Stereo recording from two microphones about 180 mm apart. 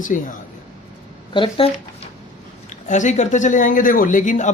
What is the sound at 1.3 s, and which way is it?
Speech, 30° left (ahead or behind).